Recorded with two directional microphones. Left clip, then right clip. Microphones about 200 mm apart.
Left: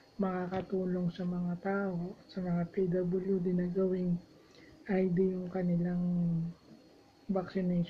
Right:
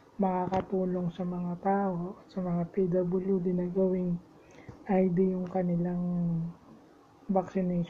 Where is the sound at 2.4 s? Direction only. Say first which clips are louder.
Right 3 dB; 5° right (ahead or behind).